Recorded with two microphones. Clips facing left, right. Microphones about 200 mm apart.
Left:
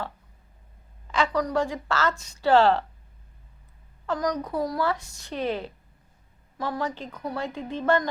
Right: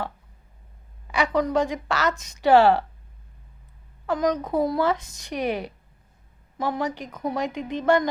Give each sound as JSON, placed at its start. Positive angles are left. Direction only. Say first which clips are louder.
{"t": 1.0, "sound": "a woman's voice", "louder": "right 2 dB", "side_deg": -15}
{"t": 4.0, "sound": "a woman's voice", "louder": "right 3 dB", "side_deg": -20}